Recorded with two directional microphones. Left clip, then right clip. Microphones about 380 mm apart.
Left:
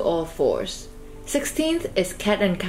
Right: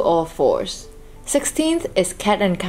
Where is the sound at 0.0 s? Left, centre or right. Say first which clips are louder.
Right 5 dB; centre.